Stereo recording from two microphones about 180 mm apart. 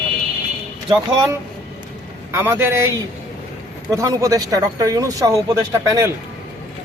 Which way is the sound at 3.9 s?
20° right (ahead or behind).